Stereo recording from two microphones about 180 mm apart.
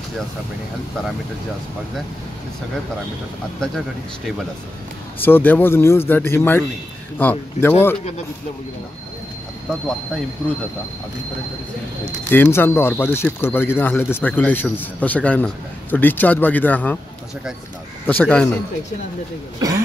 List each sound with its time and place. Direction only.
5.2 s a man's voice: 10° left (ahead or behind)
12.3 s a man's voice: 10° left (ahead or behind)
18.0 s a man's voice: 10° left (ahead or behind)
19.6 s throat clearing: 20° right (ahead or behind)